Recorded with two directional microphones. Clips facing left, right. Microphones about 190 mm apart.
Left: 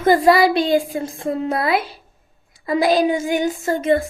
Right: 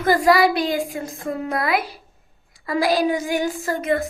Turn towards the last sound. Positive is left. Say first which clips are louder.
# left 4 dB
turn(degrees=25)  # may be behind; listen again after turning